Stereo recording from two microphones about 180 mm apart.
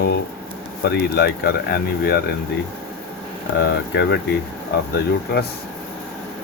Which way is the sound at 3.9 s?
70° left (ahead or behind).